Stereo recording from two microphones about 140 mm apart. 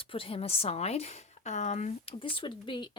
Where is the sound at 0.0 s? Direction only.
40° left (ahead or behind).